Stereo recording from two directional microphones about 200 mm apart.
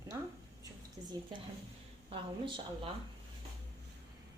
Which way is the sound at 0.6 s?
20° right (ahead or behind).